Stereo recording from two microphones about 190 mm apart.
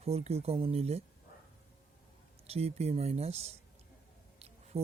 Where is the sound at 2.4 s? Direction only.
30° right (ahead or behind).